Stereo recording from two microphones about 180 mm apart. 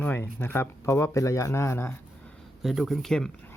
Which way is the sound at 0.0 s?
10° left (ahead or behind).